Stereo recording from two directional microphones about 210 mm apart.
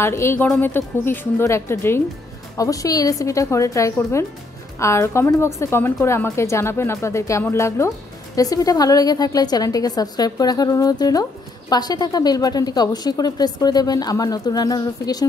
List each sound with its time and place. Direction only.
0.0 s a woman's voice: 10° left (ahead or behind)